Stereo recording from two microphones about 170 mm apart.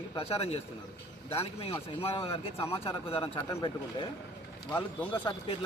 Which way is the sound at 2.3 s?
15° left (ahead or behind).